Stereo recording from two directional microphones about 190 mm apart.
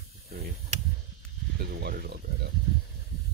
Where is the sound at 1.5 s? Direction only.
55° right (ahead or behind).